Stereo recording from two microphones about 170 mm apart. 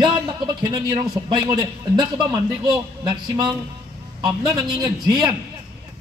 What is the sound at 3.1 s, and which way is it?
Speech, 25° right (ahead or behind).